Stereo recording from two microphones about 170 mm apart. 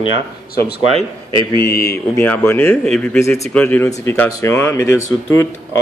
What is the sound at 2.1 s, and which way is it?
Speech, 10° left (ahead or behind).